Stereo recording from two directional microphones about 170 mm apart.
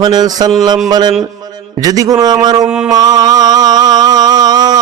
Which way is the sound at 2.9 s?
25° right (ahead or behind).